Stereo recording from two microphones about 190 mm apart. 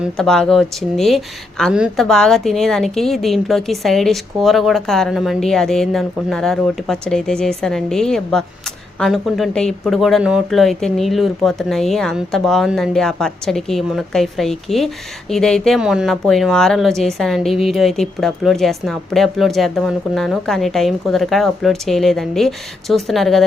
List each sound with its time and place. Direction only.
0.0 s speech: 5° left (ahead or behind)